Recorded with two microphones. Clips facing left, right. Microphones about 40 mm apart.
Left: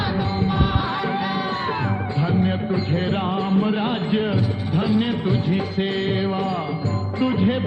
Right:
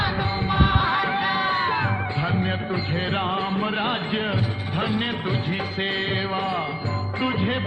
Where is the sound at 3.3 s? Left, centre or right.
Right.